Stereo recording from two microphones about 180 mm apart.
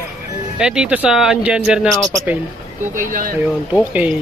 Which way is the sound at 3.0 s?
50° right (ahead or behind).